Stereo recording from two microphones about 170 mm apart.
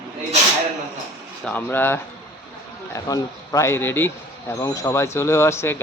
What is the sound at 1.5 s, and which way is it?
A man's voice, 10° left (ahead or behind).